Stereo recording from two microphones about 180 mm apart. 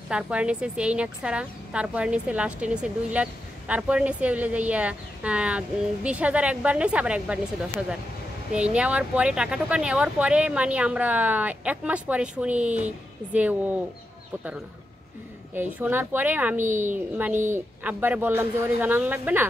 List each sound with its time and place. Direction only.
0.1 s a woman's voice: 5° right (ahead or behind)
8.7 s a woman's voice: 5° right (ahead or behind)
15.5 s a woman's voice: 10° right (ahead or behind)
16.6 s a woman's voice: 45° right (ahead or behind)
17.1 s a woman's voice: 10° right (ahead or behind)